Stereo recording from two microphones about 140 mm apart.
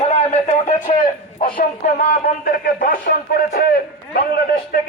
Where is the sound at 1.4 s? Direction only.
85° left.